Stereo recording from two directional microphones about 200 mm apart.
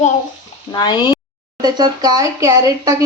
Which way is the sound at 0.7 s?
20° left (ahead or behind).